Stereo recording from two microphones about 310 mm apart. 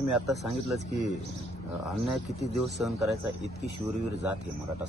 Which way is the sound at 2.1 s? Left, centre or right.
Centre.